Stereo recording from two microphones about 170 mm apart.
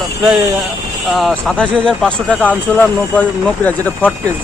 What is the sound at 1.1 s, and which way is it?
Speech, centre (ahead or behind).